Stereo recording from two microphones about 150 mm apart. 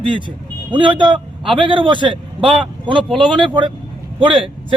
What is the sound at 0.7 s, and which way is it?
Speech, 30° right (ahead or behind).